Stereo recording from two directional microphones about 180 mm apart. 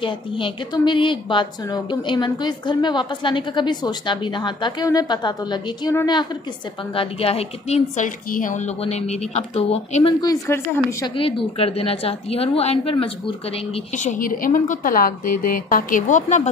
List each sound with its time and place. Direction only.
0.0 s a woman's voice: 30° left (ahead or behind)
7.0 s a woman's voice: 30° left (ahead or behind)
8.3 s a woman's voice: 50° left (ahead or behind)
8.8 s a woman's voice: 40° left (ahead or behind)
10.2 s a woman's voice: 20° left (ahead or behind)
11.1 s a woman's voice: 30° left (ahead or behind)
13.9 s a woman's voice: 45° left (ahead or behind)